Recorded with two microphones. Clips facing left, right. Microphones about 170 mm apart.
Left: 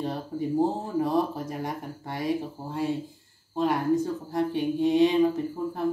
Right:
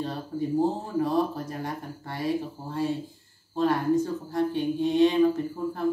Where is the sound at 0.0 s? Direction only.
15° left (ahead or behind).